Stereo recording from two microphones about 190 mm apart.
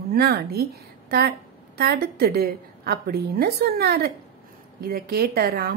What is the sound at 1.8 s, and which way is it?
A woman's voice, 55° right (ahead or behind).